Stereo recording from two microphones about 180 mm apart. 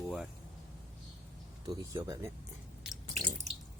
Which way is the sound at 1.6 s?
20° right (ahead or behind).